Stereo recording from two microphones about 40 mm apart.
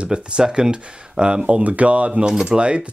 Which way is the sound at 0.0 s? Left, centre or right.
Right.